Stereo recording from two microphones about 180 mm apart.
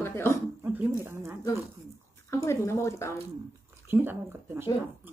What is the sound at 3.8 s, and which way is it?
Speech, 10° right (ahead or behind).